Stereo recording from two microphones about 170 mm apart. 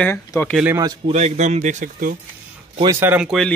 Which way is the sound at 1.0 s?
40° right (ahead or behind).